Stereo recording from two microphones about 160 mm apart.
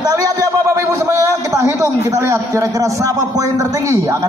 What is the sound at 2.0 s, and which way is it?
A man's voice, 15° right (ahead or behind).